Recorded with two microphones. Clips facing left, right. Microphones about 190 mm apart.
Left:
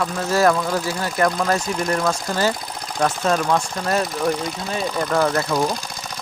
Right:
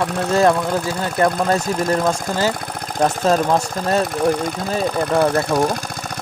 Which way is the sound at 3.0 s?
35° right (ahead or behind).